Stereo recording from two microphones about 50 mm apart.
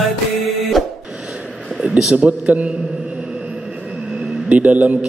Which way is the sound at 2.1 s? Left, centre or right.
Right.